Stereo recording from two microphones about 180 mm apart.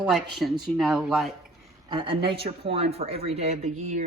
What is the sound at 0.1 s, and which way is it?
Speech, centre (ahead or behind).